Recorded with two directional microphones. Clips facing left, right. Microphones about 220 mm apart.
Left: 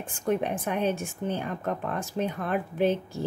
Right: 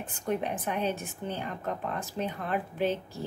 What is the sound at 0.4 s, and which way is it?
A woman's voice, 50° left (ahead or behind).